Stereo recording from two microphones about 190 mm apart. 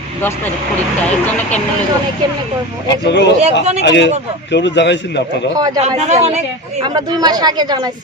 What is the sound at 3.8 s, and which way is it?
Speech, 70° left (ahead or behind).